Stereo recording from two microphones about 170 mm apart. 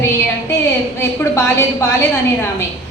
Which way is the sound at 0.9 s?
15° left (ahead or behind).